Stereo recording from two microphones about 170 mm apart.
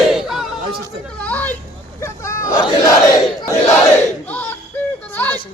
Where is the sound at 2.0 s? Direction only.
15° left (ahead or behind).